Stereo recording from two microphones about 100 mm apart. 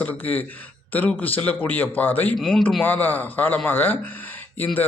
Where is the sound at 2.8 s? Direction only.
20° left (ahead or behind).